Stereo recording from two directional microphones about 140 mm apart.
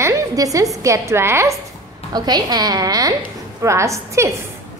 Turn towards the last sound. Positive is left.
turn(degrees=-20)  # may be behind; listen again after turning